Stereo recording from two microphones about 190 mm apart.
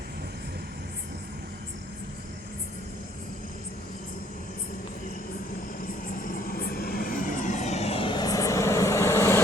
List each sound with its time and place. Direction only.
6.1 s vehicle: 45° left (ahead or behind); by 9.4 s 15° left (ahead or behind)